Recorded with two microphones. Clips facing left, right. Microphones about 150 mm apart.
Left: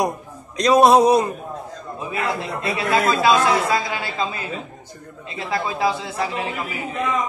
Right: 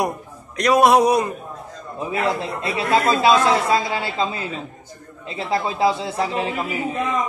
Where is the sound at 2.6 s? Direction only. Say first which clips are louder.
Right 1 dB; 25° right (ahead or behind).